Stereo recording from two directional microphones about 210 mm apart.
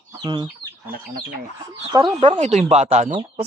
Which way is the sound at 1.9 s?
20° right (ahead or behind).